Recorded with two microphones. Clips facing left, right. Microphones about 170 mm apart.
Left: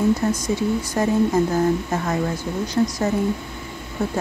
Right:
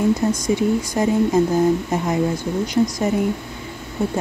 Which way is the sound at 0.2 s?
15° right (ahead or behind).